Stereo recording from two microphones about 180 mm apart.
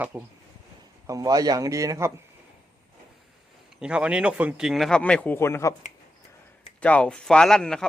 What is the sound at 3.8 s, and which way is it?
Speech, 5° right (ahead or behind).